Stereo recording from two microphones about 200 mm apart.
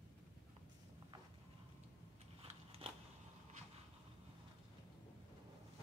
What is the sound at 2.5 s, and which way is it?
Biting, 30° right (ahead or behind).